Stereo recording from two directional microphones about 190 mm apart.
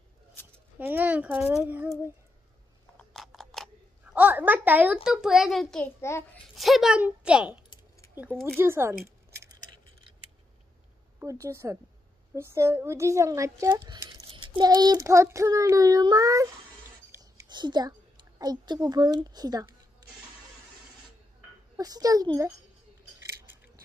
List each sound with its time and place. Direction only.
0.7 s speech: 10° right (ahead or behind)
3.0 s scissors: centre (ahead or behind)
4.1 s a child's voice: 10° right (ahead or behind)
5.9 s a child's voice: 15° left (ahead or behind)
6.5 s a child's voice: centre (ahead or behind)
8.5 s speech: 15° right (ahead or behind)
9.3 s a sound: 15° right (ahead or behind)
11.1 s speech: 15° right (ahead or behind)
17.2 s a sound: 25° right (ahead or behind)
18.4 s speech: 20° right (ahead or behind)
21.7 s a child's voice: 20° right (ahead or behind)